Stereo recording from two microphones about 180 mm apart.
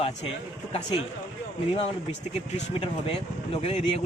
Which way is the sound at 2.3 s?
35° left (ahead or behind).